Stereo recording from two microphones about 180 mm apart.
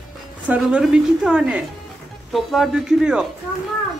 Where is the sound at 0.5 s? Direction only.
5° right (ahead or behind).